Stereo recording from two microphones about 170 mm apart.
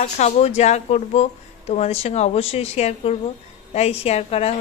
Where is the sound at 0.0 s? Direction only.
40° left (ahead or behind).